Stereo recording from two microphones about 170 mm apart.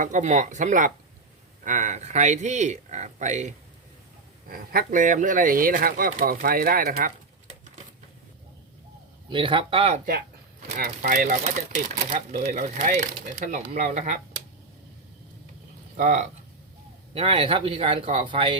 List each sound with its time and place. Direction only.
0.0 s speech: 45° right (ahead or behind)
4.4 s speech: 60° right (ahead or behind)
9.3 s speech: 30° right (ahead or behind)
10.8 s speech: 50° right (ahead or behind)
16.0 s speech: 50° right (ahead or behind)
17.2 s speech: 35° right (ahead or behind)